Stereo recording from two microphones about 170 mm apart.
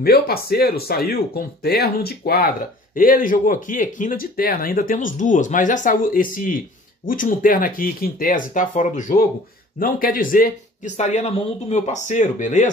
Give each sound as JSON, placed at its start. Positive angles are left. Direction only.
{"t": 0.0, "sound": "speech", "side_deg": 65}